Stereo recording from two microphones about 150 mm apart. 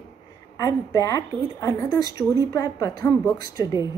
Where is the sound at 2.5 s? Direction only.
25° left (ahead or behind).